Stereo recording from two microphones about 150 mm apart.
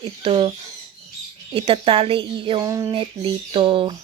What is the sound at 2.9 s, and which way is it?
Speech, 35° right (ahead or behind).